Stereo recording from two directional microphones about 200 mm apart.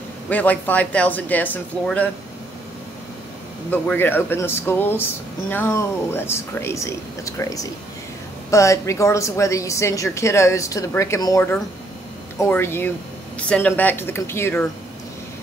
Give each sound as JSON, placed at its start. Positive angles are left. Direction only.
{"t": 0.3, "sound": "a woman's voice", "side_deg": 10}
{"t": 3.7, "sound": "a woman's voice", "side_deg": 10}